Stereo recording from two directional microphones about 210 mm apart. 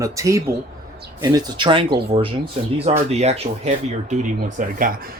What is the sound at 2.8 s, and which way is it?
Speech, 30° right (ahead or behind).